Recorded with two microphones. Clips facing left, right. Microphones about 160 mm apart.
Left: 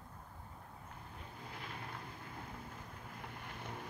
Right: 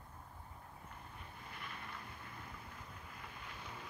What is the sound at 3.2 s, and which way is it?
Boat, 60° left (ahead or behind).